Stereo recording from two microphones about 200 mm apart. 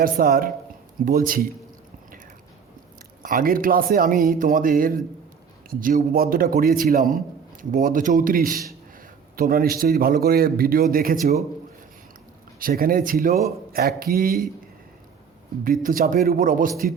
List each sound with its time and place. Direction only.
0.0 s speech: 45° right (ahead or behind)
3.2 s speech: 45° right (ahead or behind)
12.5 s speech: 45° right (ahead or behind)
15.6 s speech: 45° right (ahead or behind)